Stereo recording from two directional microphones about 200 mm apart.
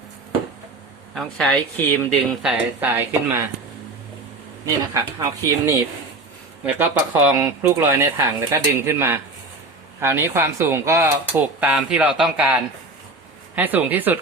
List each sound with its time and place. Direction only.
1.1 s speech: centre (ahead or behind)
4.6 s speech: 15° right (ahead or behind)
13.6 s speech: 10° right (ahead or behind)